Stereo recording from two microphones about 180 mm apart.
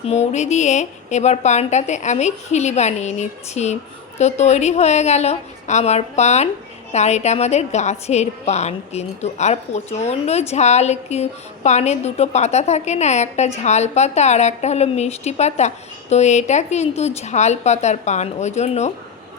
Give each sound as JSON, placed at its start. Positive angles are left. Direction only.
{"t": 0.0, "sound": "a woman's voice", "side_deg": 35}